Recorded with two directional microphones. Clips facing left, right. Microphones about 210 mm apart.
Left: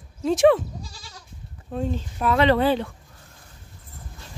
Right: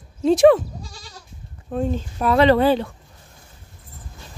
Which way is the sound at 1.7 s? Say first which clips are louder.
Right 4 dB; 50° right (ahead or behind).